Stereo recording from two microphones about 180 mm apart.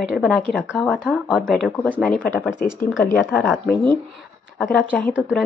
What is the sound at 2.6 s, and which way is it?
Speech, 50° left (ahead or behind).